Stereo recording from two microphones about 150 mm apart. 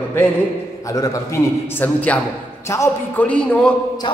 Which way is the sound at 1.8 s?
10° left (ahead or behind).